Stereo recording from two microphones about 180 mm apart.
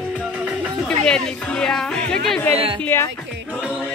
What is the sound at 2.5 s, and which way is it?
Speech, 30° right (ahead or behind).